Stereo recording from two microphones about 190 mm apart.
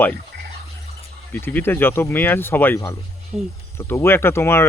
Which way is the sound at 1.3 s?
10° left (ahead or behind).